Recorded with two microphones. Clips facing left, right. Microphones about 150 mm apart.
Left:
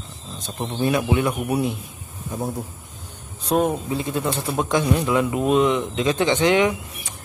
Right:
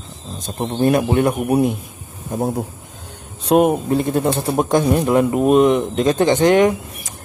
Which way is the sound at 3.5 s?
70° right (ahead or behind).